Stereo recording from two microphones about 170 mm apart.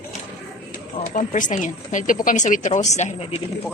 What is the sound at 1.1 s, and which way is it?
Speech, 50° left (ahead or behind).